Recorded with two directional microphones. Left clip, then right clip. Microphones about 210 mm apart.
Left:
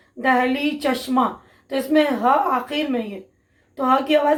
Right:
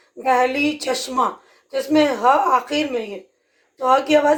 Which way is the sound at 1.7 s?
50° right (ahead or behind).